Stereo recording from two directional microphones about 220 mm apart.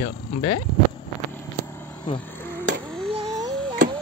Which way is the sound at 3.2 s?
15° right (ahead or behind).